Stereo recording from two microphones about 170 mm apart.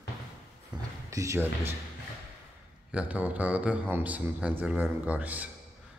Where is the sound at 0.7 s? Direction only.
25° right (ahead or behind).